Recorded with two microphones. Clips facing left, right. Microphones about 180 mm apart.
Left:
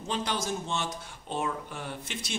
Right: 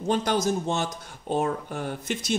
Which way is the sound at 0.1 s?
45° right (ahead or behind).